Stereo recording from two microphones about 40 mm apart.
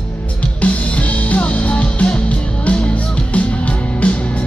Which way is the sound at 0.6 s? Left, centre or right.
Left.